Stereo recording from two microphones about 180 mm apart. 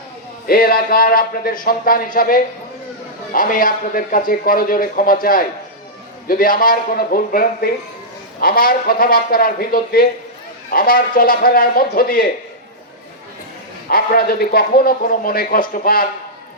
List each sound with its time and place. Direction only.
0.4 s a man's voice: 55° left (ahead or behind)
13.9 s a man's voice: 55° left (ahead or behind)